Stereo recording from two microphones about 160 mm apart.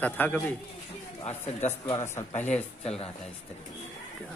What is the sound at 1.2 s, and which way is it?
Speech, 45° left (ahead or behind).